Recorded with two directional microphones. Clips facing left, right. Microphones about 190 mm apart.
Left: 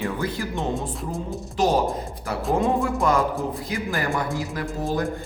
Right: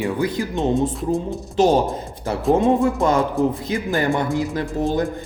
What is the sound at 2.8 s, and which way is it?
Speech, 25° right (ahead or behind).